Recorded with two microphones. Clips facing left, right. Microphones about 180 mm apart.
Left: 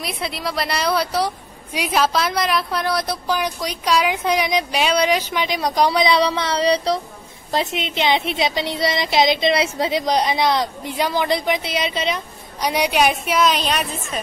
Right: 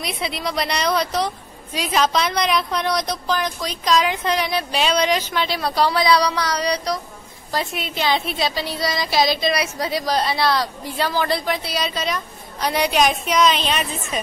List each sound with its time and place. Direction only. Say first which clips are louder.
0.0 s a woman's voice: even; centre (ahead or behind); by 12.6 s 25° left (ahead or behind)
12.6 s a woman's voice: left 1 dB; 10° left (ahead or behind)